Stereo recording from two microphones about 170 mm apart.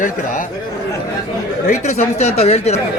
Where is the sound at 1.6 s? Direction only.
40° left (ahead or behind).